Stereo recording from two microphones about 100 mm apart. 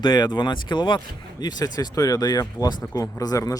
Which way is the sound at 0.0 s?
50° left (ahead or behind).